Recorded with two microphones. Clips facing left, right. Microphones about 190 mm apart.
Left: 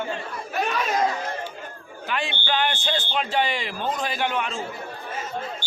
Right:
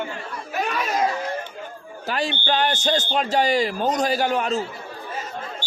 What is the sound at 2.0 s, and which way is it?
Speech, 40° right (ahead or behind).